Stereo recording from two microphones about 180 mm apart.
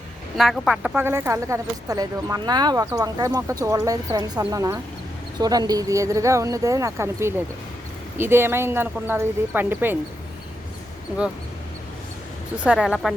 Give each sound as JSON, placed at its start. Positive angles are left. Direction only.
{"t": 0.3, "sound": "speech", "side_deg": 0}
{"t": 12.5, "sound": "a woman's voice", "side_deg": -5}